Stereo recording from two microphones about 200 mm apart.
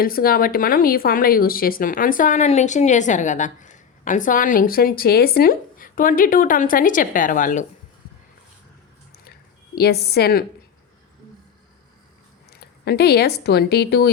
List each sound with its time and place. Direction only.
0.0 s speech: 45° left (ahead or behind)
9.7 s speech: 50° left (ahead or behind)
12.5 s speech: 55° left (ahead or behind)